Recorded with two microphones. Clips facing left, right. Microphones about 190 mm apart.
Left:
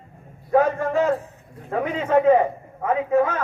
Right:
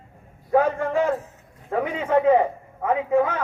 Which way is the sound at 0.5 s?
15° right (ahead or behind).